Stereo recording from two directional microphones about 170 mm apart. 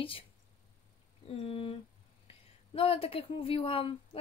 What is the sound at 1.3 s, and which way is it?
Speech, 35° left (ahead or behind).